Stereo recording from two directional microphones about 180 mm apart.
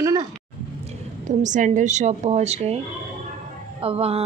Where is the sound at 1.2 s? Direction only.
45° right (ahead or behind).